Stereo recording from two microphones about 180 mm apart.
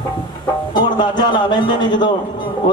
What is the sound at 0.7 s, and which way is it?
A man's voice, 25° left (ahead or behind).